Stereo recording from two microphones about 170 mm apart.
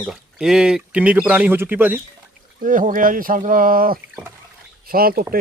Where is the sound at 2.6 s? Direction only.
50° right (ahead or behind).